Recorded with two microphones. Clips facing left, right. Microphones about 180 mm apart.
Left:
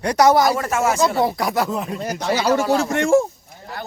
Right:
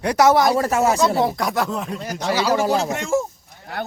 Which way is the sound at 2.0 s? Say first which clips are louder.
Even; 45° left (ahead or behind).